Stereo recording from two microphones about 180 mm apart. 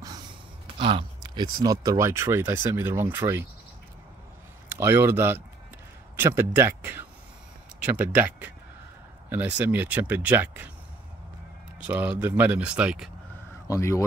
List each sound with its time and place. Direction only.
0.0 s a sound: 20° right (ahead or behind)
0.7 s speech: 30° right (ahead or behind)
4.7 s speech: 15° right (ahead or behind)
9.7 s speech: 10° right (ahead or behind)
11.9 s speech: 10° right (ahead or behind)
13.7 s speech: 15° left (ahead or behind)